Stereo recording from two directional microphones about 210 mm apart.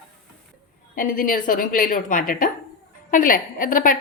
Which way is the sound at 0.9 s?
40° left (ahead or behind).